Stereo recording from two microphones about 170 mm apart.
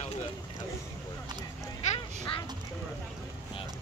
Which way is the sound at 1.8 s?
45° left (ahead or behind).